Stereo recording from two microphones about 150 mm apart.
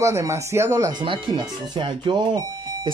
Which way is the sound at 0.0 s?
20° right (ahead or behind).